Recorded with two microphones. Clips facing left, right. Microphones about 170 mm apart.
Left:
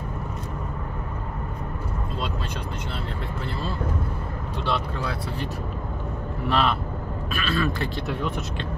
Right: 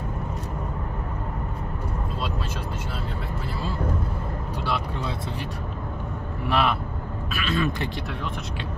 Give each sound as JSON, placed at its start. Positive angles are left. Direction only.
{"t": 6.4, "sound": "speech", "side_deg": -10}